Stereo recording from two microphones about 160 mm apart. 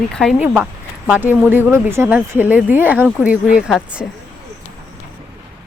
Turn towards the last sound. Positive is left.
turn(degrees=-5)  # may be behind; listen again after turning